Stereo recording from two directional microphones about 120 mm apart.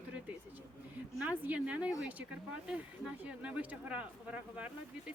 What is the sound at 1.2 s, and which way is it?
Speech, 15° right (ahead or behind).